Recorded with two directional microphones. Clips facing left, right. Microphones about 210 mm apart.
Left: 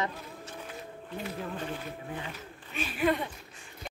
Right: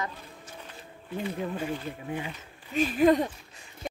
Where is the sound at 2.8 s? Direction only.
40° right (ahead or behind).